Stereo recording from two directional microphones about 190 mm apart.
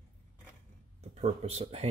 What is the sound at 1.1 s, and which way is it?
Speech, 35° right (ahead or behind).